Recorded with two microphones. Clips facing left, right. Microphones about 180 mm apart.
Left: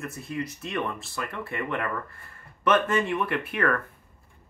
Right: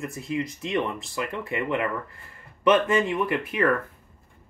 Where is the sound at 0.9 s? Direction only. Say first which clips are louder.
Right 3 dB; 15° right (ahead or behind).